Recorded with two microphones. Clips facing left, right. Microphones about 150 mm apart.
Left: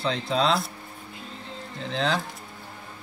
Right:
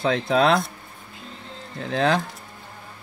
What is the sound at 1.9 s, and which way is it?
Speech, 55° right (ahead or behind).